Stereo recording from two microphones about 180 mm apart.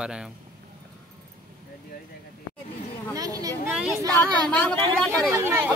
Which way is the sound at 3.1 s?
20° right (ahead or behind).